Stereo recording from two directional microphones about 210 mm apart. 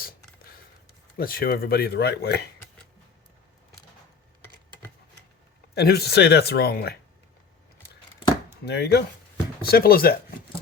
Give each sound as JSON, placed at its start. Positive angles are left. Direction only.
{"t": 1.1, "sound": "speech", "side_deg": 45}
{"t": 5.7, "sound": "speech", "side_deg": 50}
{"t": 8.6, "sound": "speech", "side_deg": 50}